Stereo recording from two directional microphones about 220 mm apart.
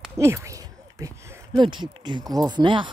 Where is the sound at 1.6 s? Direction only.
20° right (ahead or behind).